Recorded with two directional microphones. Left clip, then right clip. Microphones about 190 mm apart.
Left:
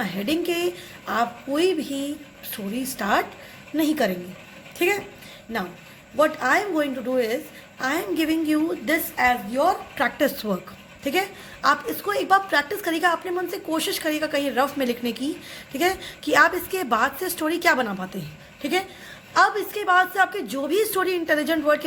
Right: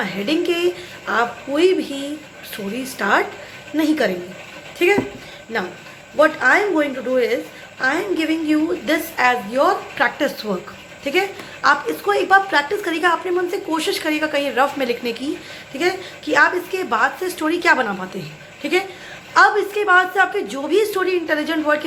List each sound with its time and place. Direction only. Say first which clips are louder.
0.0 s a woman's voice: right 5 dB; 35° left (ahead or behind)
6.1 s a woman's voice: right 6 dB; 40° left (ahead or behind)